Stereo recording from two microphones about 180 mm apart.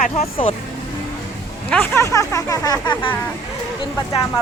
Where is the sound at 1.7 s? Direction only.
10° left (ahead or behind).